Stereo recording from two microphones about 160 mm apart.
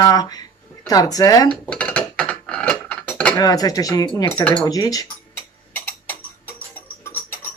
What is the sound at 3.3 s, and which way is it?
Speech, 25° left (ahead or behind).